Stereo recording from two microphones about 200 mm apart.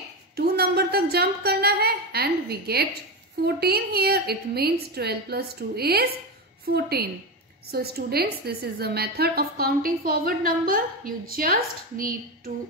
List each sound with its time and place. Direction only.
0.4 s a woman's voice: 50° right (ahead or behind)